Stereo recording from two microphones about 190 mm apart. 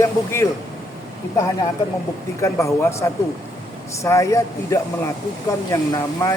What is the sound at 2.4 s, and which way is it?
Speech, 15° left (ahead or behind).